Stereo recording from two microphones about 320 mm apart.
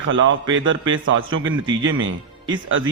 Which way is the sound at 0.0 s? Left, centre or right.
Right.